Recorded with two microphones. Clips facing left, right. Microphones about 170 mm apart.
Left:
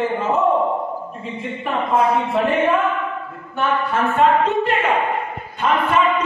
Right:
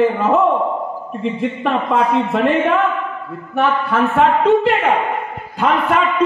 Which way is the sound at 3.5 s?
70° right (ahead or behind).